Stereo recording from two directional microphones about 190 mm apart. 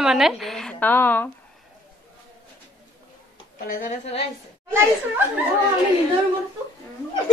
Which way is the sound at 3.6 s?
40° left (ahead or behind).